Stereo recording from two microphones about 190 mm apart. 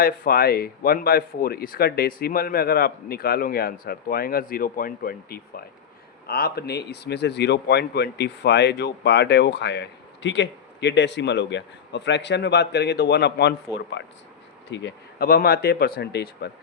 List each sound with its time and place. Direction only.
0.0 s speech: 50° left (ahead or behind)
14.0 s speech: 70° left (ahead or behind)